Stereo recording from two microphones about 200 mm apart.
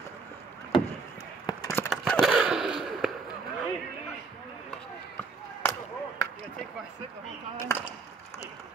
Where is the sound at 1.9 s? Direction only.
Centre (ahead or behind).